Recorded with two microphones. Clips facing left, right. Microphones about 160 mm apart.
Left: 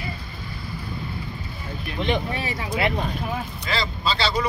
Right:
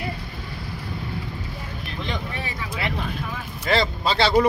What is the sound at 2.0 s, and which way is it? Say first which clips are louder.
Speech: left 6 dB; 20° left (ahead or behind).